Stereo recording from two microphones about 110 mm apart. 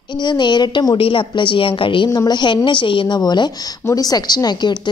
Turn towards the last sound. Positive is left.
turn(degrees=40)  # may be behind; listen again after turning